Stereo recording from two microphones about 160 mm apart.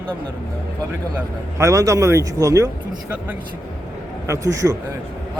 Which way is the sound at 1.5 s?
20° right (ahead or behind).